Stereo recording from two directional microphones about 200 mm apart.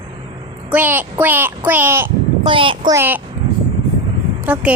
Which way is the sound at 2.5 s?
25° right (ahead or behind).